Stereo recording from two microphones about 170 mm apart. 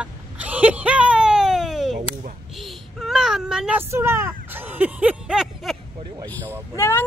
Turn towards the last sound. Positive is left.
turn(degrees=15)  # may be behind; listen again after turning